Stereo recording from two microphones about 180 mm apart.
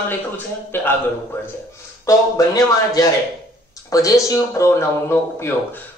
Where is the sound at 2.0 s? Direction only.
20° left (ahead or behind).